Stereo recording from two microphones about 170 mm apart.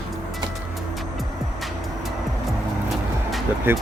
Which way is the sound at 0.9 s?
Centre (ahead or behind).